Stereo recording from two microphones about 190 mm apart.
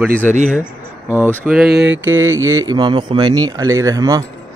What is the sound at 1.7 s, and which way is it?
Mantra, 65° right (ahead or behind).